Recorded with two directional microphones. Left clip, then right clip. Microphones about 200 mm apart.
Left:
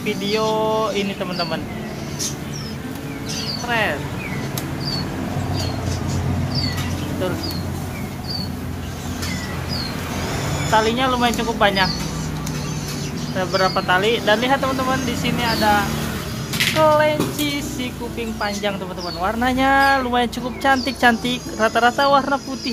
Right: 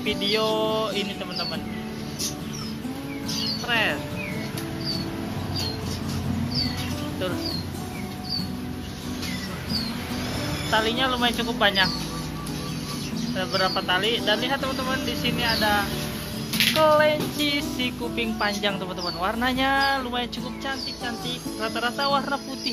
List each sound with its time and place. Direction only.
0.0 s speech: centre (ahead or behind)
3.6 s speech: centre (ahead or behind)
10.7 s speech: 5° left (ahead or behind)
13.4 s speech: 5° left (ahead or behind)
15.0 s speech: centre (ahead or behind)
20.8 s speech: 25° left (ahead or behind)
21.5 s speech: 15° left (ahead or behind)